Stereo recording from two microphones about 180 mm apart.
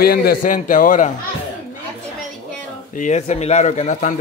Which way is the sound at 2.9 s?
40° left (ahead or behind).